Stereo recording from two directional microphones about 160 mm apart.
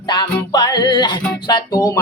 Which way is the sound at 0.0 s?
25° left (ahead or behind).